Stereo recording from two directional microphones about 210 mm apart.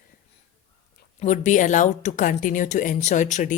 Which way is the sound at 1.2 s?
35° left (ahead or behind).